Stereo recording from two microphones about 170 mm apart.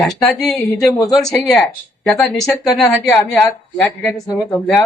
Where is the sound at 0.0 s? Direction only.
Centre (ahead or behind).